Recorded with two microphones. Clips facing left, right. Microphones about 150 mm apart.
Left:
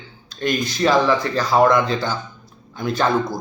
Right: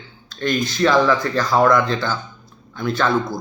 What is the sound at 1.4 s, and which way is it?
Speech, 10° left (ahead or behind).